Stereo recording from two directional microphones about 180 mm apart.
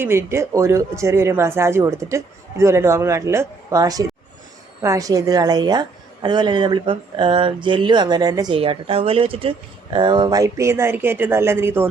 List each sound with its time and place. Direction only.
0.0 s speech: 15° right (ahead or behind)